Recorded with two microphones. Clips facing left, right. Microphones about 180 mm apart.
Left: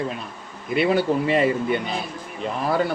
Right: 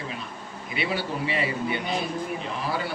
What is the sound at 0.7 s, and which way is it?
A man's voice, 50° left (ahead or behind).